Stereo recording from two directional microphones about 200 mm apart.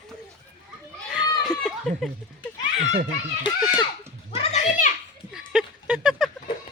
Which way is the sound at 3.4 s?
20° left (ahead or behind).